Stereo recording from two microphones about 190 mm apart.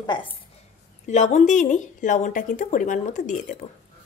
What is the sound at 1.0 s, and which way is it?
Speech, 40° left (ahead or behind).